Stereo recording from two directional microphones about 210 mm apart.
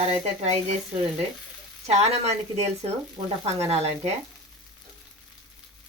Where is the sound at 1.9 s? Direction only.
30° right (ahead or behind).